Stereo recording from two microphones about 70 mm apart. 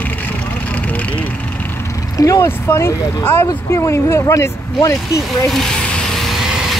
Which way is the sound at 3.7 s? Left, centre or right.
Left.